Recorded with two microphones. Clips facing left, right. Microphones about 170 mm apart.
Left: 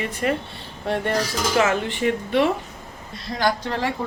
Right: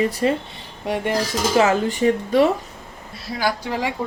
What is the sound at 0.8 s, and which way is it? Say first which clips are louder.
Speech: right 1 dB; 10° right (ahead or behind).